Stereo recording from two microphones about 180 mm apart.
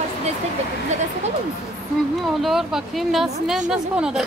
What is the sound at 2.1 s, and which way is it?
Speech, centre (ahead or behind).